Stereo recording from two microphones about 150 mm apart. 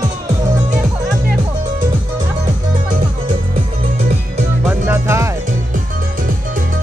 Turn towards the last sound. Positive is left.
turn(degrees=-20)  # may be behind; listen again after turning